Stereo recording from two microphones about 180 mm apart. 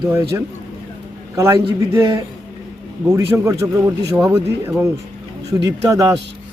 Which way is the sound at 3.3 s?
15° right (ahead or behind).